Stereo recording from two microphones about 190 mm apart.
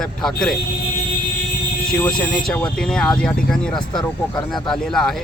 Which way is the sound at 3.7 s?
25° left (ahead or behind).